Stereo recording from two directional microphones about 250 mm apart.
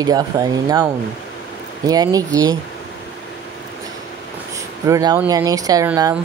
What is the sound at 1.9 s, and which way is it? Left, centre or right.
Speech, centre.